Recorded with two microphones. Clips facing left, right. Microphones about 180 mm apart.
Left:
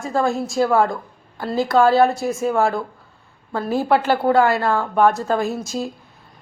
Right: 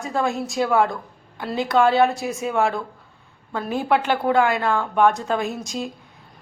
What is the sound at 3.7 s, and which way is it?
Speech, 40° left (ahead or behind).